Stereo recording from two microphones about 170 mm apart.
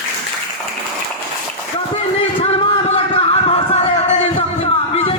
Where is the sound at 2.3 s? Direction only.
30° left (ahead or behind).